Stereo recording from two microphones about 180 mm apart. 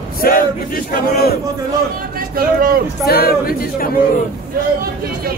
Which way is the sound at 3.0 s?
60° left (ahead or behind).